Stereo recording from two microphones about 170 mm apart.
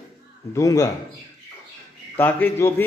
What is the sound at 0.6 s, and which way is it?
Speech, 20° left (ahead or behind).